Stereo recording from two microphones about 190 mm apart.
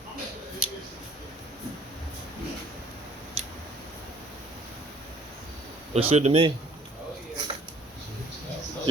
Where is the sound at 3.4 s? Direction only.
35° right (ahead or behind).